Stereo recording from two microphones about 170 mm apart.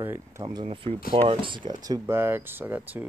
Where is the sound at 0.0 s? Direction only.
15° right (ahead or behind).